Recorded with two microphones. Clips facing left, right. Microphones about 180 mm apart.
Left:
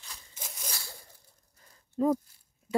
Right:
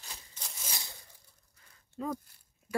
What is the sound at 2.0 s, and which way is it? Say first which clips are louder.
Speech: left 10 dB; 40° left (ahead or behind).